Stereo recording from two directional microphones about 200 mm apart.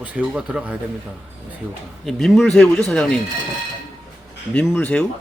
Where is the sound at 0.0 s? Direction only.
5° right (ahead or behind).